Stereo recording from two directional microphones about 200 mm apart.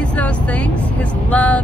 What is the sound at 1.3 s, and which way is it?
Speech, 5° left (ahead or behind).